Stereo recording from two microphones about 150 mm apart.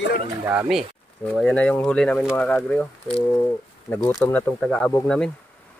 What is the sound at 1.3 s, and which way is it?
Speech, 5° left (ahead or behind).